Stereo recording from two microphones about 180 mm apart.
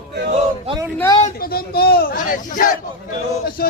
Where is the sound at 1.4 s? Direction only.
60° left (ahead or behind).